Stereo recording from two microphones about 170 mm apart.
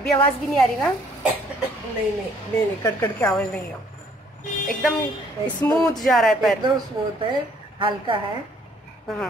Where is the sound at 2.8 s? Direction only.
10° left (ahead or behind).